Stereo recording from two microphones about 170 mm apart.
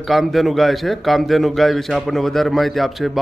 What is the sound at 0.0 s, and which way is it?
A man's voice, centre (ahead or behind).